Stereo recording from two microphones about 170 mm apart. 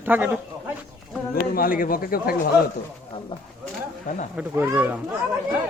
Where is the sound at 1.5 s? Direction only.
55° left (ahead or behind).